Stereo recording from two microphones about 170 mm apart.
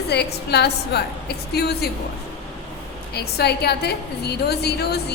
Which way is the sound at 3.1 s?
70° left (ahead or behind).